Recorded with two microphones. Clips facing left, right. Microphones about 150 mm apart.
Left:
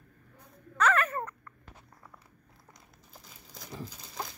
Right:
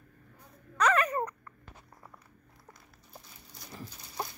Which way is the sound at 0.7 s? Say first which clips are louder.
Right 1 dB; 10° right (ahead or behind).